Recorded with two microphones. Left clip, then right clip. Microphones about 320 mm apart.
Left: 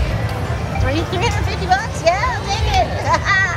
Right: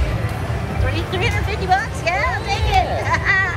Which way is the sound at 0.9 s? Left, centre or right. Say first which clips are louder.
Left 2 dB; centre.